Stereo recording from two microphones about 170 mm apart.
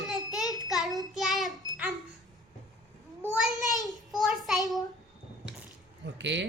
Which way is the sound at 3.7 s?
20° left (ahead or behind).